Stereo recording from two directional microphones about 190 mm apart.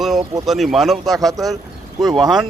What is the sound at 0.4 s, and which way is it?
Speech, centre (ahead or behind).